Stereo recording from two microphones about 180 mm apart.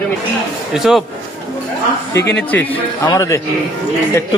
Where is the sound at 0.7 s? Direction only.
Centre (ahead or behind).